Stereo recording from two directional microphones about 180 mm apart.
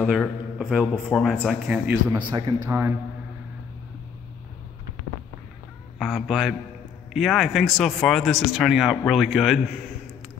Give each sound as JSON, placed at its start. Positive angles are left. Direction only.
{"t": 0.0, "sound": "speech", "side_deg": 5}
{"t": 2.1, "sound": "a man's voice", "side_deg": -25}
{"t": 5.9, "sound": "speech", "side_deg": 0}